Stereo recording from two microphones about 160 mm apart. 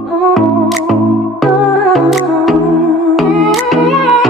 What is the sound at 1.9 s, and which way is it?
Music, centre (ahead or behind).